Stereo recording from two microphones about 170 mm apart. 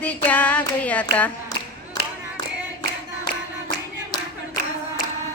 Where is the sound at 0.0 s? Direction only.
10° left (ahead or behind).